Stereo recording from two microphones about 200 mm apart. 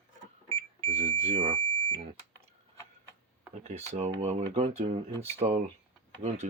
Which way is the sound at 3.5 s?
35° right (ahead or behind).